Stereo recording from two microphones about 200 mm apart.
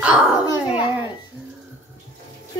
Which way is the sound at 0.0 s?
5° right (ahead or behind).